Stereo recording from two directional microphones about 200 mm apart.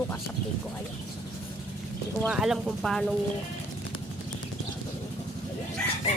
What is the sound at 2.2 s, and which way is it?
Speech, 5° right (ahead or behind).